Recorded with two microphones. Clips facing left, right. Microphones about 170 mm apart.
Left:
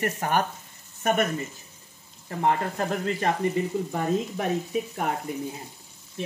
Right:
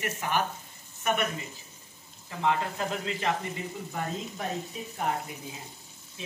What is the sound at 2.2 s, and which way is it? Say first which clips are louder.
Speech: left 3 dB; 50° left (ahead or behind).